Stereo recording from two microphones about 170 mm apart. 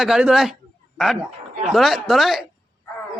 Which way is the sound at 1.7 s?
Centre (ahead or behind).